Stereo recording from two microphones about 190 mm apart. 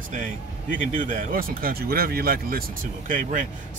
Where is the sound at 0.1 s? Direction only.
45° right (ahead or behind).